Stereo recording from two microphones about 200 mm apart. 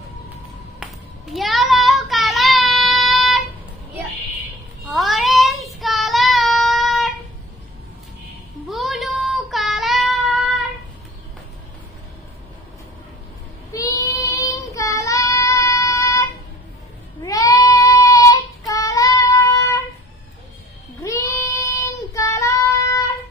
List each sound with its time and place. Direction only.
0.7 s child singing: centre (ahead or behind)
4.8 s child singing: centre (ahead or behind)
8.6 s child singing: centre (ahead or behind)
13.7 s child singing: 15° left (ahead or behind)
17.2 s goat: 15° left (ahead or behind)
18.7 s child singing: 15° left (ahead or behind)
21.0 s child singing: 15° left (ahead or behind)